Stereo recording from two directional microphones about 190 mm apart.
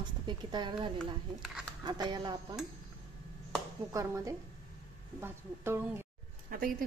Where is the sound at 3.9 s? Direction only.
15° right (ahead or behind).